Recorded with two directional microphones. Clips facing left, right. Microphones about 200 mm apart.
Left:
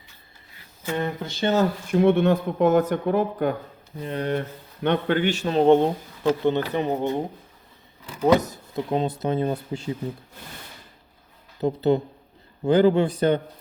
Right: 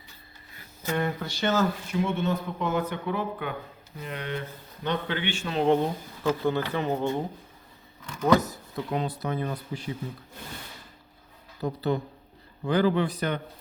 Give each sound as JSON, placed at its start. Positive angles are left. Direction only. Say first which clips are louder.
{"t": 0.9, "sound": "speech", "louder": "left 1 dB", "side_deg": 25}
{"t": 1.9, "sound": "speech", "louder": "left 9 dB", "side_deg": 60}
{"t": 3.9, "sound": "speech", "louder": "left 8 dB", "side_deg": 35}
{"t": 4.4, "sound": "speech", "louder": "left 7 dB", "side_deg": 60}
{"t": 8.3, "sound": "speech", "louder": "left 3 dB", "side_deg": 20}
{"t": 11.6, "sound": "speech", "louder": "left 7 dB", "side_deg": 25}